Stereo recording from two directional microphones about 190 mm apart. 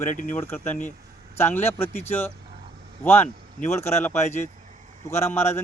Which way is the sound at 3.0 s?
10° left (ahead or behind).